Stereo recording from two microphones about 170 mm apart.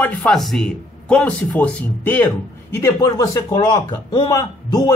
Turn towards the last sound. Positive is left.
turn(degrees=20)  # may be behind; listen again after turning